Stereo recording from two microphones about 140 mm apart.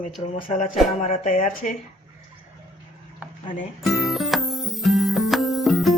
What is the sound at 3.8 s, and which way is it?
Music, centre (ahead or behind).